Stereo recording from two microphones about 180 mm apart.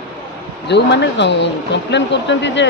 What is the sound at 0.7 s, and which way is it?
Speech, 75° left (ahead or behind).